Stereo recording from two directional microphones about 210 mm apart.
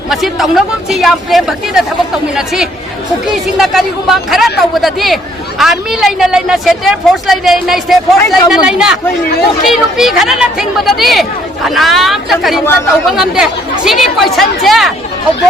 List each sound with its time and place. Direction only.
0.1 s speech: centre (ahead or behind)
12.6 s speech: 10° left (ahead or behind)
13.1 s speech: centre (ahead or behind)